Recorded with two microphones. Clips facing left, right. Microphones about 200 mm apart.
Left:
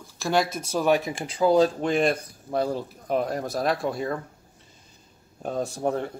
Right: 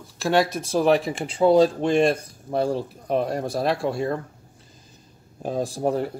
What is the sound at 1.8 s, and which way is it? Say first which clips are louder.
Speech: right 3 dB; 25° right (ahead or behind).